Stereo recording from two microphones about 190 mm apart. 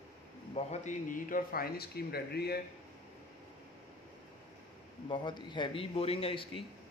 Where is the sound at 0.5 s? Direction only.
35° left (ahead or behind); by 2.5 s 55° left (ahead or behind).